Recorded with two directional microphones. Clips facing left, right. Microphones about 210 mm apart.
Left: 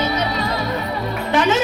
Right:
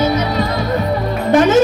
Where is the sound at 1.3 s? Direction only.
45° right (ahead or behind).